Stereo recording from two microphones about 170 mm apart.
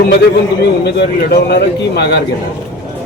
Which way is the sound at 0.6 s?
75° left (ahead or behind).